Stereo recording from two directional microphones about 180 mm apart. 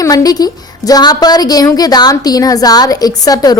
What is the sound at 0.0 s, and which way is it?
A woman's voice, 20° left (ahead or behind).